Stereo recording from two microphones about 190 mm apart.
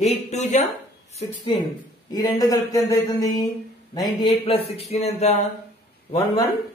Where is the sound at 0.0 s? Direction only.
35° left (ahead or behind).